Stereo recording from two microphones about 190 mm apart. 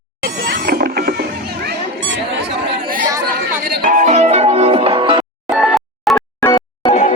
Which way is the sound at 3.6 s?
45° right (ahead or behind).